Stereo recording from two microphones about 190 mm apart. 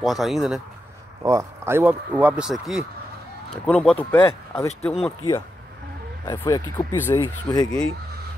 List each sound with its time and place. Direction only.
0.0 s speech: centre (ahead or behind)
1.2 s speech: 15° right (ahead or behind); by 4.9 s 15° left (ahead or behind)
6.2 s speech: 20° left (ahead or behind)